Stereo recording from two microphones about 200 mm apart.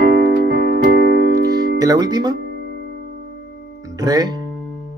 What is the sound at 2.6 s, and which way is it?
Music, 55° left (ahead or behind).